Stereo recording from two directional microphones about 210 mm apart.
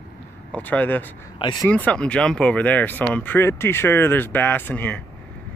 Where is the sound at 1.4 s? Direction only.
20° left (ahead or behind).